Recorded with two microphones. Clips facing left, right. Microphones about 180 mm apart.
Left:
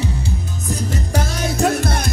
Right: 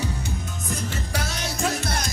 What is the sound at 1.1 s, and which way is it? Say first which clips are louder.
Music: left 9 dB; 55° left (ahead or behind).